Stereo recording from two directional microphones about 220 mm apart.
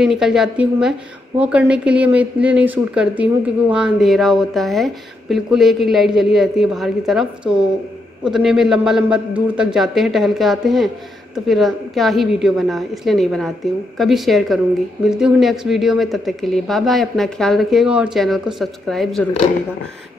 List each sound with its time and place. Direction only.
0.0 s speech: centre (ahead or behind)